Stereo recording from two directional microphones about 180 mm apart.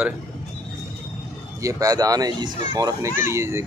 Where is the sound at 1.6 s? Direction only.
20° right (ahead or behind).